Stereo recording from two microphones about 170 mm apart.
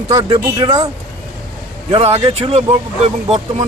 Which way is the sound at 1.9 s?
35° right (ahead or behind).